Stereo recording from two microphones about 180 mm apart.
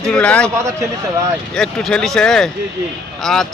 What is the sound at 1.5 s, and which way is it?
Speech, 5° left (ahead or behind).